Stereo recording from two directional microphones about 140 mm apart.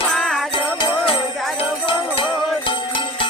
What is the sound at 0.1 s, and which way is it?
Jingle bell, centre (ahead or behind).